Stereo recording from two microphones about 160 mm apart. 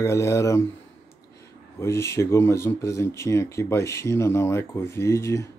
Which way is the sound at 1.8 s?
15° left (ahead or behind).